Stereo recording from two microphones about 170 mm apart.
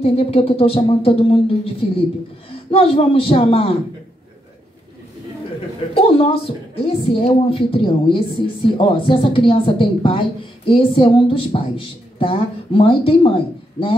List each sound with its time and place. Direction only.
0.0 s a woman's voice: 35° left (ahead or behind)
5.9 s a woman's voice: 35° left (ahead or behind)